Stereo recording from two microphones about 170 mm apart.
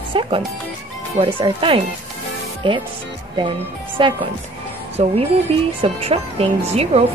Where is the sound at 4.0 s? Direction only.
30° right (ahead or behind).